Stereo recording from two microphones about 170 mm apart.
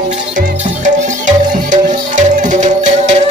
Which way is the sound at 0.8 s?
45° right (ahead or behind).